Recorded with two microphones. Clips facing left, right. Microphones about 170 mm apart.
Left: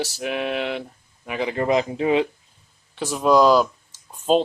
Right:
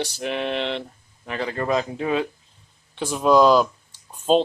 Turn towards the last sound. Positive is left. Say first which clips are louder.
# even
turn(degrees=5)  # may be behind; listen again after turning